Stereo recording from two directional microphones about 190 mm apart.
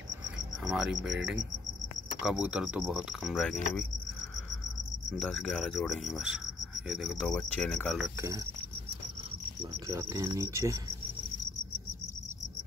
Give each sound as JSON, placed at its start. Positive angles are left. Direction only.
{"t": 0.7, "sound": "cricket", "side_deg": -5}
{"t": 5.2, "sound": "cricket", "side_deg": 0}
{"t": 9.6, "sound": "insect", "side_deg": -15}